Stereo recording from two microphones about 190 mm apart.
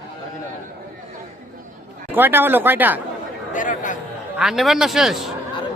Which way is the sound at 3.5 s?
45° left (ahead or behind).